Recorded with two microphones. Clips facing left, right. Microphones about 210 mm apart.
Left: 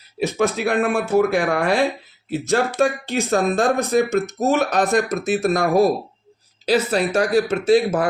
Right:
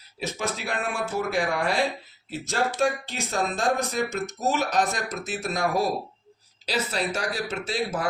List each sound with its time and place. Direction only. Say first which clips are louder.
0.2 s speech: left 11 dB; 60° left (ahead or behind)
6.7 s speech: left 9 dB; 55° left (ahead or behind)